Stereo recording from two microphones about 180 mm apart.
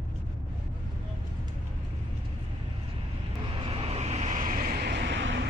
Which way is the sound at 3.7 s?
35° right (ahead or behind).